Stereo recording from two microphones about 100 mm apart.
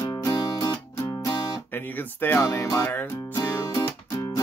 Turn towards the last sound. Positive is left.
turn(degrees=35)  # may be behind; listen again after turning